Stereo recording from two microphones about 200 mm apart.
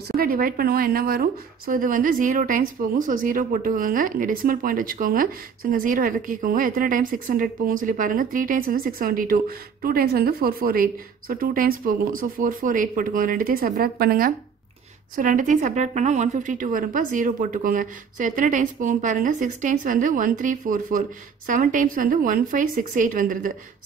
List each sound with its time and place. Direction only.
0.2 s a woman's voice: 45° right (ahead or behind)